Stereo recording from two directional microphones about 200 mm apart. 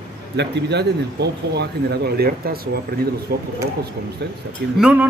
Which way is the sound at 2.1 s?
50° right (ahead or behind).